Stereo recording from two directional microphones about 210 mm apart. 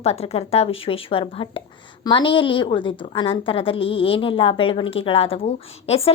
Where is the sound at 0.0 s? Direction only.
30° left (ahead or behind).